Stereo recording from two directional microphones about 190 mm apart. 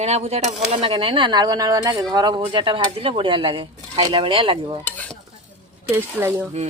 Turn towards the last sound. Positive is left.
turn(degrees=-10)  # may be behind; listen again after turning